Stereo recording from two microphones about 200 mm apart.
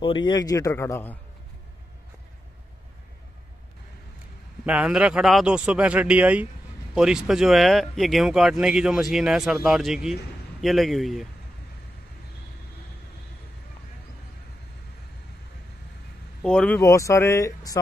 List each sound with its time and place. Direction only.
0.0 s speech: 25° left (ahead or behind)
4.6 s speech: 5° right (ahead or behind)
16.4 s speech: 5° left (ahead or behind)